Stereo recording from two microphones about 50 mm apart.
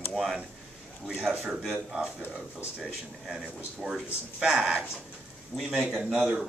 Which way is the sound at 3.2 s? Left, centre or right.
Centre.